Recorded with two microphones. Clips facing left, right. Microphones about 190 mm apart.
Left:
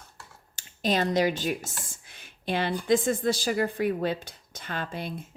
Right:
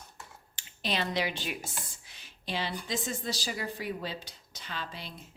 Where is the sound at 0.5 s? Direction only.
45° left (ahead or behind).